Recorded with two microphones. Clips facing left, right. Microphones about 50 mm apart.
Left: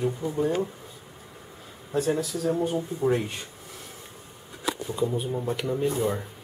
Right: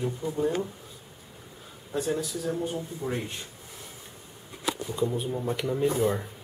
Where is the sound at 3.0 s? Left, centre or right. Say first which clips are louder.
Left 9 dB; left.